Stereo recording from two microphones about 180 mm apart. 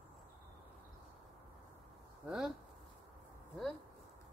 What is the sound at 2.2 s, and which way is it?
Speech, 5° right (ahead or behind).